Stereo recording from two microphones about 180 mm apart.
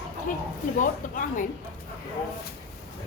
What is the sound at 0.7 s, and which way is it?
Speech, 45° left (ahead or behind).